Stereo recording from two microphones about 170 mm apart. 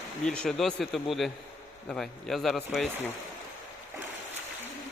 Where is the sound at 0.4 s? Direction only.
Centre (ahead or behind).